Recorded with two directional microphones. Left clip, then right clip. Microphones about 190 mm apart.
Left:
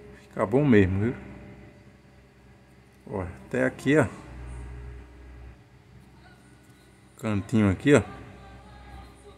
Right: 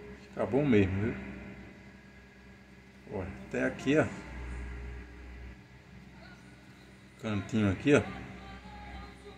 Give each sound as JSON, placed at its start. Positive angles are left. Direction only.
{"t": 0.3, "sound": "speech", "side_deg": 50}
{"t": 3.1, "sound": "speech", "side_deg": 45}
{"t": 7.2, "sound": "speech", "side_deg": 50}